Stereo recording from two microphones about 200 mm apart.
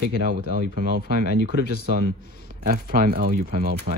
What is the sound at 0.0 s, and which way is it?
Speech, 45° right (ahead or behind).